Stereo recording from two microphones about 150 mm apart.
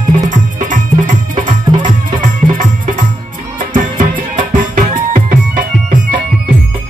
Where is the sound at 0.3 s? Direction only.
60° right (ahead or behind).